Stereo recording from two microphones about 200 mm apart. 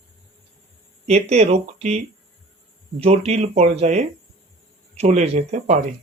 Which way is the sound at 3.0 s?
30° right (ahead or behind).